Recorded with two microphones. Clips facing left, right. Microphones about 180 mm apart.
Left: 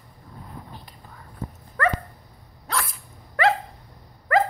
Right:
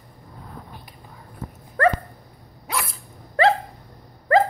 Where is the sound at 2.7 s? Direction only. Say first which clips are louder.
Even; 10° right (ahead or behind).